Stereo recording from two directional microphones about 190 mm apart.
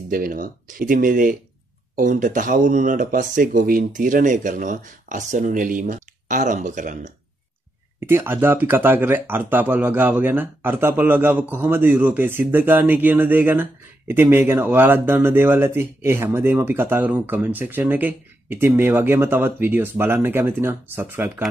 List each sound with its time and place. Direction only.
0.1 s speech: 45° right (ahead or behind)
8.0 s speech: 10° right (ahead or behind)